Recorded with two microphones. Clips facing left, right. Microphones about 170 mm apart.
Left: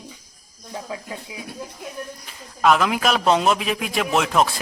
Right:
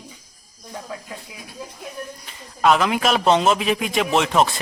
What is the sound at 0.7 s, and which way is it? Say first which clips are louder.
Speech: left 2 dB; 15° left (ahead or behind).